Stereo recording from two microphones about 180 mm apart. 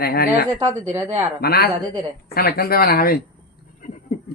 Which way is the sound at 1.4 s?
60° left (ahead or behind).